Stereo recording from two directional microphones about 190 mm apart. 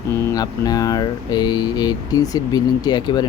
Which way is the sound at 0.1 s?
15° left (ahead or behind).